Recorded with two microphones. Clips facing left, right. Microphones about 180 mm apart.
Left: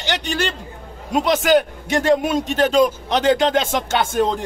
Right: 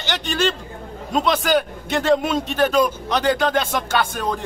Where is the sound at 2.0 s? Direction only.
15° left (ahead or behind).